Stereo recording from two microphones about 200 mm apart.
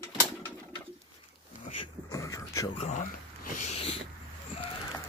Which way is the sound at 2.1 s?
15° left (ahead or behind).